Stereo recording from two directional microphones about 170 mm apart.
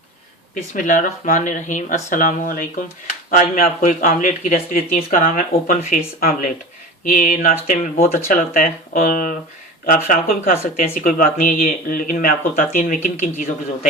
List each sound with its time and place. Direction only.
0.7 s speech: 45° left (ahead or behind)
7.1 s a sound: 55° left (ahead or behind)
8.1 s speech: 55° left (ahead or behind)